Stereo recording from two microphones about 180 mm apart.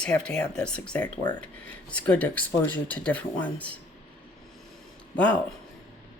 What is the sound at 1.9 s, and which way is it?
A woman's voice, 5° left (ahead or behind).